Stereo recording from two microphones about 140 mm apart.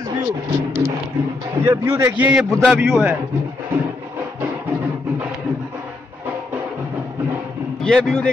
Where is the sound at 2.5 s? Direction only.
Centre (ahead or behind).